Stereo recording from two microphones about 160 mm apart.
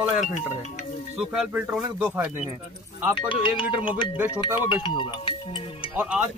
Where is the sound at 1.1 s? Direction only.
10° right (ahead or behind).